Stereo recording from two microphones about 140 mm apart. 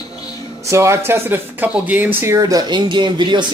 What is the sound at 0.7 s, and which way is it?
Speech, 20° right (ahead or behind).